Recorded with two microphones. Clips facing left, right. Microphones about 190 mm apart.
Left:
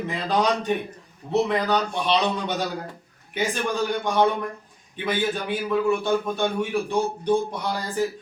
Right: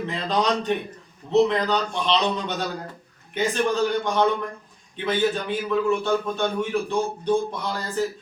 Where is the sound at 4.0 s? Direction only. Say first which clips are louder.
Even; 10° left (ahead or behind).